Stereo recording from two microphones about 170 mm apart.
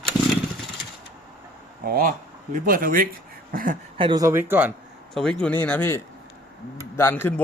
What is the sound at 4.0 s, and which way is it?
Speech, 25° right (ahead or behind).